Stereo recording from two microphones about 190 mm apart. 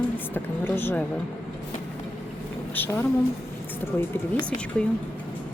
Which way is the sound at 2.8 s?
10° left (ahead or behind).